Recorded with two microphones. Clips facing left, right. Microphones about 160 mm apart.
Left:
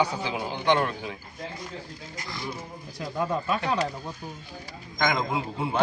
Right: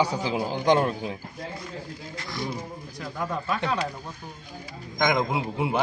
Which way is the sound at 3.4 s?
20° left (ahead or behind).